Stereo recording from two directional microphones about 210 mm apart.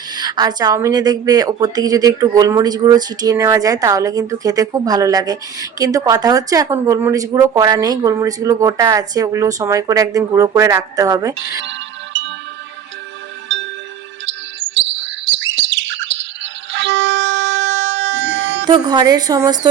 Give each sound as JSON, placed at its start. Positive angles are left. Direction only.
{"t": 0.2, "sound": "speech", "side_deg": -20}
{"t": 14.8, "sound": "bird", "side_deg": -60}
{"t": 18.6, "sound": "a woman's voice", "side_deg": -20}